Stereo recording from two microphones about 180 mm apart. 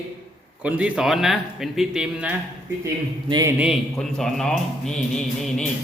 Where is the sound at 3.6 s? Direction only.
Centre (ahead or behind).